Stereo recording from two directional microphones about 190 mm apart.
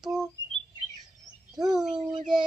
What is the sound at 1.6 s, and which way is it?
Child singing, centre (ahead or behind).